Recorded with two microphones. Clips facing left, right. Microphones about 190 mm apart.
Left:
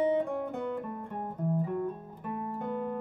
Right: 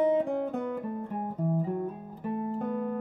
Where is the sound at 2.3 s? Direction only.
60° right (ahead or behind).